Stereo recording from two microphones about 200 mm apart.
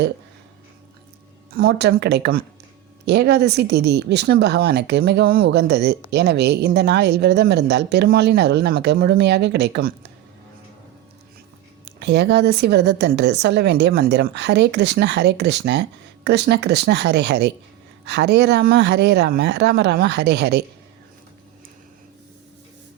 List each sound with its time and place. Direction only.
1.5 s a woman's voice: 55° right (ahead or behind)
11.9 s a woman's voice: 55° right (ahead or behind)